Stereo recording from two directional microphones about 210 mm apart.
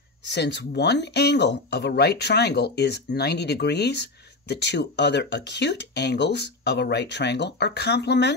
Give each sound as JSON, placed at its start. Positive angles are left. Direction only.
{"t": 0.3, "sound": "speech", "side_deg": 55}